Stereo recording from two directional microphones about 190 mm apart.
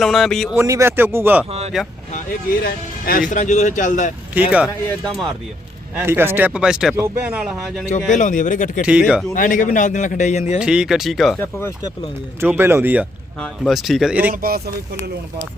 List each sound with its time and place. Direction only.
0.0 s speech: centre (ahead or behind)
0.5 s speech: 15° right (ahead or behind)
2.6 s speech: 50° left (ahead or behind)
4.4 s speech: 5° right (ahead or behind)
6.0 s speech: 10° right (ahead or behind)
8.2 s a man's voice: 40° left (ahead or behind)
8.9 s speech: 5° right (ahead or behind)
9.3 s a man's voice: 45° left (ahead or behind)
10.6 s speech: 5° right (ahead or behind)
11.3 s speech: 10° left (ahead or behind)
12.4 s speech: 10° right (ahead or behind)